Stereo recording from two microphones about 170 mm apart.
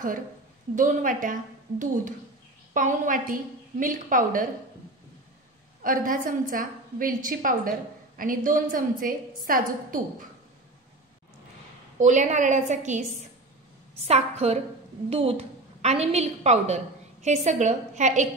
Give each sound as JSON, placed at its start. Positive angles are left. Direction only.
{"t": 0.7, "sound": "a woman's voice", "side_deg": -50}
{"t": 5.8, "sound": "a woman's voice", "side_deg": -55}
{"t": 12.0, "sound": "a woman's voice", "side_deg": -45}
{"t": 14.0, "sound": "a woman's voice", "side_deg": -40}